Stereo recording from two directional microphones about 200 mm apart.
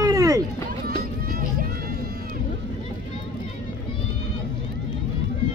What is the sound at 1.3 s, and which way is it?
Music, 45° right (ahead or behind).